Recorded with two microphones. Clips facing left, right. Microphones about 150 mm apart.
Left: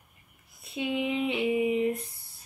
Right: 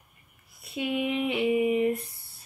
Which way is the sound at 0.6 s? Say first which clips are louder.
Right 1 dB; 20° left (ahead or behind).